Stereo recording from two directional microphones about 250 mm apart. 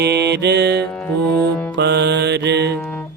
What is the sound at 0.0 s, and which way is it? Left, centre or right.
Mantra, right.